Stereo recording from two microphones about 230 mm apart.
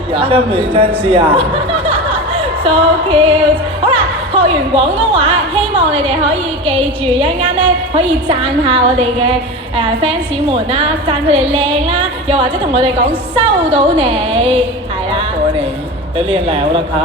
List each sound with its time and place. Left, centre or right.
0.1 s a woman's voice: right
16.1 s a woman's voice: right